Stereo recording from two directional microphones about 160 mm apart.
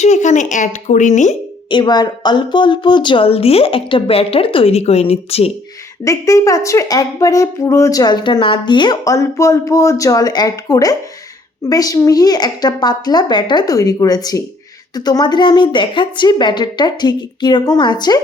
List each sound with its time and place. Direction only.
0.0 s speech: 45° left (ahead or behind)
1.7 s a woman's voice: 25° left (ahead or behind)
6.1 s a woman's voice: 20° left (ahead or behind)